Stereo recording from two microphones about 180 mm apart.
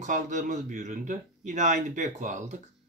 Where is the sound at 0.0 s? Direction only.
45° right (ahead or behind).